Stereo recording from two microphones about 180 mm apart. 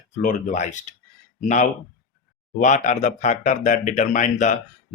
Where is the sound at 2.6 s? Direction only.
40° left (ahead or behind).